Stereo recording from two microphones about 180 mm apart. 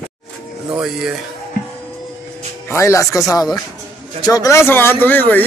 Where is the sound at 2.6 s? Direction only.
15° left (ahead or behind).